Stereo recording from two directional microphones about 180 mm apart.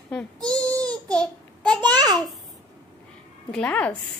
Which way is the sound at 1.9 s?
20° right (ahead or behind).